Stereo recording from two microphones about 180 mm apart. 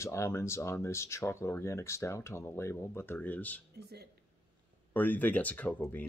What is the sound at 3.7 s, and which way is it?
Speech, 65° right (ahead or behind).